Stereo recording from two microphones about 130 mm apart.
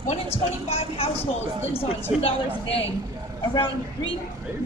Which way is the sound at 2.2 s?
45° left (ahead or behind).